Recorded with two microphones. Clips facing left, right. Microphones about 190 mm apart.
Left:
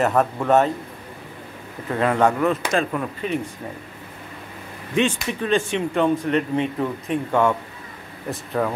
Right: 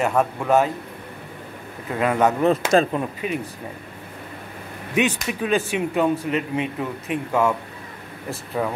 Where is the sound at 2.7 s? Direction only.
35° right (ahead or behind).